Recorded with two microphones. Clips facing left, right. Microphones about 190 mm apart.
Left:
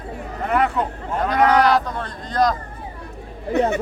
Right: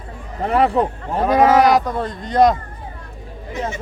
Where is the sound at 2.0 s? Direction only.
25° right (ahead or behind).